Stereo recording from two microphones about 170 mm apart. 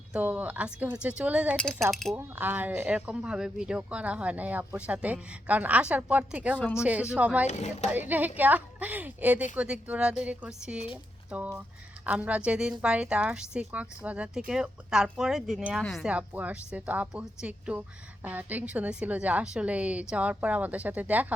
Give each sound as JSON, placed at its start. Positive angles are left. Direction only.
{"t": 0.1, "sound": "speech", "side_deg": -10}
{"t": 1.5, "sound": "speech", "side_deg": 0}
{"t": 2.1, "sound": "speech", "side_deg": -10}
{"t": 6.6, "sound": "speech", "side_deg": 10}
{"t": 6.8, "sound": "speech", "side_deg": -5}
{"t": 7.4, "sound": "speech", "side_deg": 40}
{"t": 7.9, "sound": "speech", "side_deg": -10}